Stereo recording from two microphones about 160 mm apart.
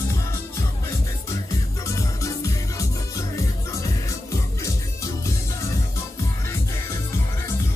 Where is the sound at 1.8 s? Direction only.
20° left (ahead or behind).